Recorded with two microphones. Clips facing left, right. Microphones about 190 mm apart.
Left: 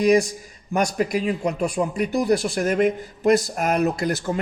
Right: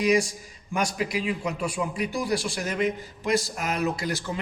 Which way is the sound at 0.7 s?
45° left (ahead or behind).